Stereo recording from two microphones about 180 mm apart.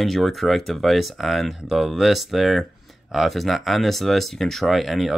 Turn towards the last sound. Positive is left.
turn(degrees=0)  # may be behind; listen again after turning